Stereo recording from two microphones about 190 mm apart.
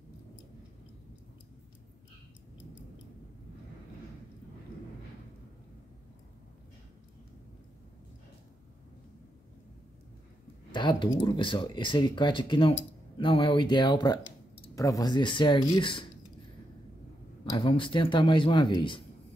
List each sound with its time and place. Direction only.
10.7 s a sound: 25° left (ahead or behind)
11.1 s speech: 25° left (ahead or behind)
17.5 s speech: 25° left (ahead or behind)